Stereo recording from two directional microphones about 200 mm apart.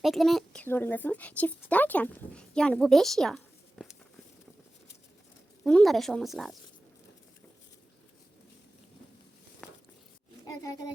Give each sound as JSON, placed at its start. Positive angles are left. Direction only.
{"t": 0.0, "sound": "speech", "side_deg": 0}
{"t": 5.6, "sound": "speech", "side_deg": 0}
{"t": 9.6, "sound": "a sound", "side_deg": 5}
{"t": 10.4, "sound": "speech", "side_deg": 15}